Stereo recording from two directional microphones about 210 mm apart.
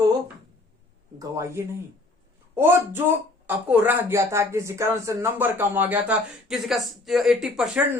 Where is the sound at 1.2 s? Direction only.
15° right (ahead or behind).